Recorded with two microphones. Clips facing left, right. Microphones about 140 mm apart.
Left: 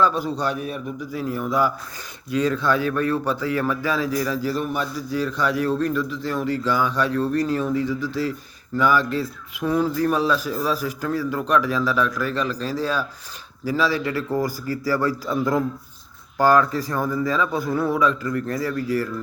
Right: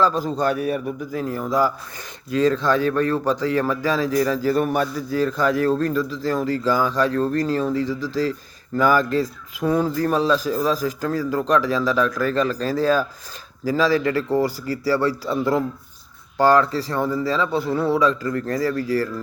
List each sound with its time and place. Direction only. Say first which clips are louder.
0.6 s a man's voice: right 5 dB; 55° right (ahead or behind); by 15.4 s 30° right (ahead or behind)
16.4 s speech: right 1 dB; 30° right (ahead or behind)